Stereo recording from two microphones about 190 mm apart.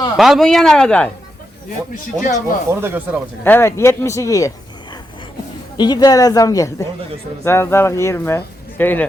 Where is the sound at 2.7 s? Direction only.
10° right (ahead or behind).